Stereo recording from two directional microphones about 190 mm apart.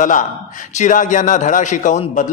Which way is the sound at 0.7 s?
40° left (ahead or behind).